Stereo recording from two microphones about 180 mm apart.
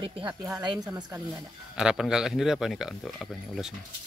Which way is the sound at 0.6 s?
25° right (ahead or behind).